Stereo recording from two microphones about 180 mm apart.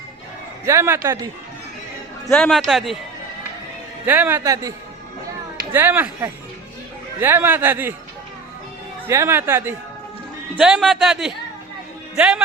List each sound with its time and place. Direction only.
0.6 s speech: 15° right (ahead or behind)
2.3 s a man's voice: centre (ahead or behind)
4.0 s speech: 10° right (ahead or behind)
5.7 s speech: 10° right (ahead or behind)
9.0 s speech: 15° right (ahead or behind)
10.6 s a man's voice: centre (ahead or behind)